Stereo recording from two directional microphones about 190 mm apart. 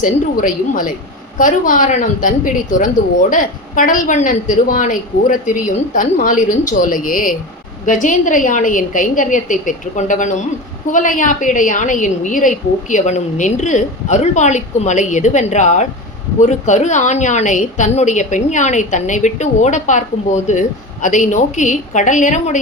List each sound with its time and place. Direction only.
0.0 s a woman's voice: 45° left (ahead or behind)